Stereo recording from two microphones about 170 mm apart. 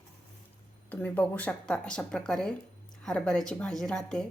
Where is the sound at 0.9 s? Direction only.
10° left (ahead or behind).